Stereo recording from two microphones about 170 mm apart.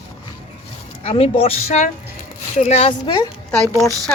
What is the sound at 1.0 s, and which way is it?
Speech, 35° left (ahead or behind).